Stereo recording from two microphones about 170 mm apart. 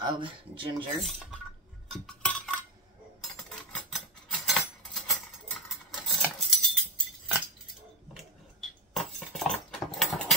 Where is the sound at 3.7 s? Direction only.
Centre (ahead or behind).